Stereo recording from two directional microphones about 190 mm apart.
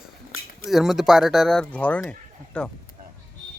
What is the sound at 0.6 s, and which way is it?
Speech, centre (ahead or behind).